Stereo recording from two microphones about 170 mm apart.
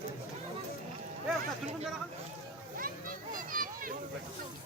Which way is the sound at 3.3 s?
55° right (ahead or behind).